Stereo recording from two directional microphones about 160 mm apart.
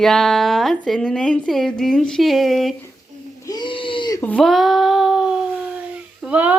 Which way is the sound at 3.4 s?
30° left (ahead or behind).